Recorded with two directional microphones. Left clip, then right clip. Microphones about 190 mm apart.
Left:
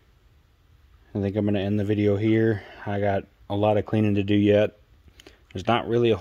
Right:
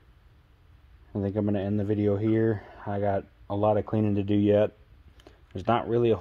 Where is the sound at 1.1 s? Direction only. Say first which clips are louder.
Left 3 dB; 35° left (ahead or behind).